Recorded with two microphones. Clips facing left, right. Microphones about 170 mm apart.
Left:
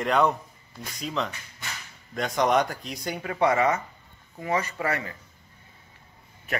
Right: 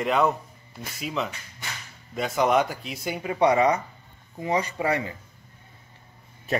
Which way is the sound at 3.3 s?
20° right (ahead or behind).